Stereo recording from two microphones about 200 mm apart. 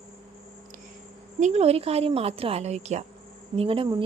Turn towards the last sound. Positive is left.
turn(degrees=-25)  # may be behind; listen again after turning